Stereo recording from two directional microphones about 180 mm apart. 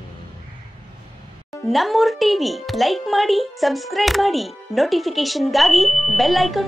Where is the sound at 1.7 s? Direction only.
Centre (ahead or behind).